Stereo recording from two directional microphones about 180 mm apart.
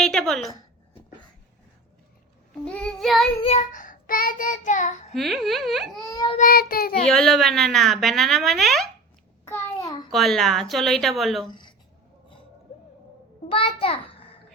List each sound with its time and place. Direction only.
0.0 s a sound: 5° left (ahead or behind)
2.6 s speech: 5° left (ahead or behind)
3.4 s child singing: 40° left (ahead or behind)
5.1 s speech: centre (ahead or behind)
6.1 s speech: 20° left (ahead or behind)
6.4 s child singing: 55° left (ahead or behind)
7.1 s speech: centre (ahead or behind)
10.1 s speech: centre (ahead or behind)
11.4 s speech: 25° left (ahead or behind)
13.5 s a child's voice: 30° left (ahead or behind)